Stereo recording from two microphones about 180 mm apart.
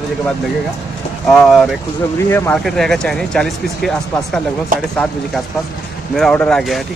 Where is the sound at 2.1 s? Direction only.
15° left (ahead or behind).